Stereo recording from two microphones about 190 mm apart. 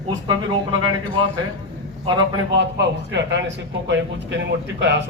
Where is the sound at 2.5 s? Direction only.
65° right (ahead or behind).